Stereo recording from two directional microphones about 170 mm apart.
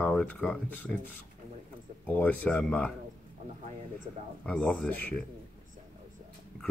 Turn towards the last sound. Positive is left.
turn(degrees=5)  # may be behind; listen again after turning